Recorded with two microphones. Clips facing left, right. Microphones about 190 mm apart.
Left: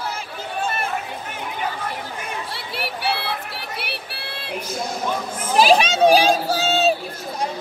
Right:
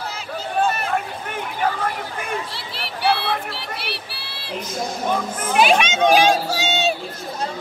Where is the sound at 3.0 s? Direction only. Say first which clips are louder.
Right 6 dB; 60° right (ahead or behind).